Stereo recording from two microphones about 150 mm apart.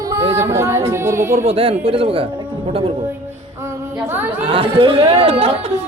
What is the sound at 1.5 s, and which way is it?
Speech, 35° right (ahead or behind).